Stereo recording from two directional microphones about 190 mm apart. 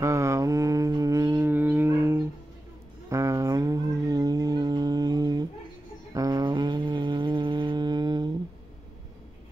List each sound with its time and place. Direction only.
0.0 s mantra: 15° right (ahead or behind)
3.1 s a sound: 15° right (ahead or behind)
6.1 s music: 20° right (ahead or behind)